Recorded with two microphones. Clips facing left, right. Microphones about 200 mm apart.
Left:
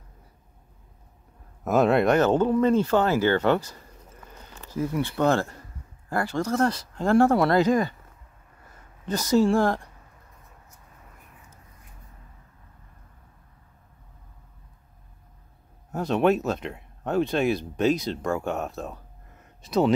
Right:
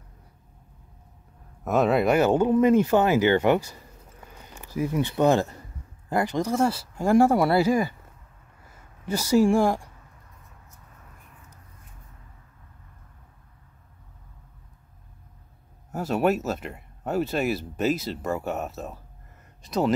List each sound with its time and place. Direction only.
1.6 s speech: centre (ahead or behind)
9.0 s speech: 10° right (ahead or behind)
15.9 s speech: 5° right (ahead or behind)